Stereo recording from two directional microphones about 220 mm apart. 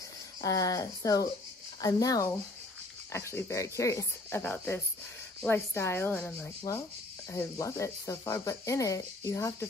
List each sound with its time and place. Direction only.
0.4 s speech: 15° left (ahead or behind)